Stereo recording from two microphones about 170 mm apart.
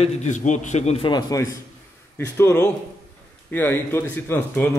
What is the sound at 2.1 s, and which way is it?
A man's voice, 15° left (ahead or behind).